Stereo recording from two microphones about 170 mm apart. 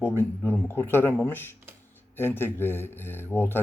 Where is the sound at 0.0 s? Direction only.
15° left (ahead or behind).